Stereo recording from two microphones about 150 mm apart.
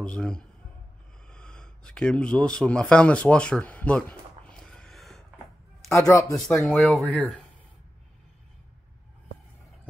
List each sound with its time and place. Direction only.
0.0 s speech: 5° left (ahead or behind)
1.3 s a sound: 5° left (ahead or behind)
5.9 s a man's voice: 20° left (ahead or behind)
6.3 s speech: centre (ahead or behind)